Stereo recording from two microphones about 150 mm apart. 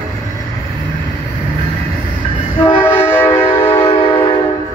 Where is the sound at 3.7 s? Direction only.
30° left (ahead or behind).